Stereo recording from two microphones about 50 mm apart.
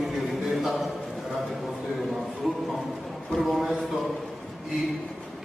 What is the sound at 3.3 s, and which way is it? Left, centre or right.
Speech, centre.